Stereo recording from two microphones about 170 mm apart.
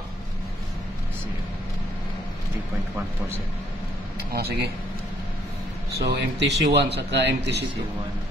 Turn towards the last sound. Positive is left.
turn(degrees=-85)